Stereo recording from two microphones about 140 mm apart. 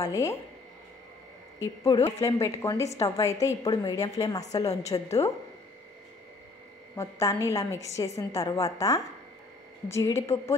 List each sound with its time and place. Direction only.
0.0 s a woman's voice: 20° left (ahead or behind)
1.8 s a woman's voice: 20° left (ahead or behind)
7.0 s a woman's voice: 20° left (ahead or behind)